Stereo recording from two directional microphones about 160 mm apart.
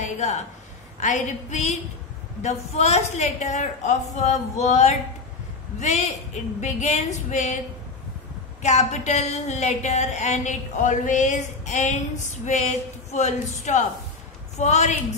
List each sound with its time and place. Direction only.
0.0 s a sound: 45° left (ahead or behind)
0.9 s speech: 50° left (ahead or behind)
8.6 s speech: 45° left (ahead or behind)